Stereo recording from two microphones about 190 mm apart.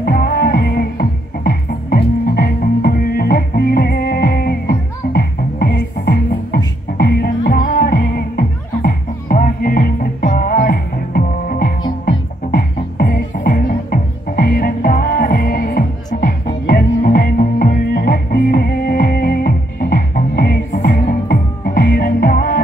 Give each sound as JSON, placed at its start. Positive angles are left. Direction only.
{"t": 0.0, "sound": "music", "side_deg": 50}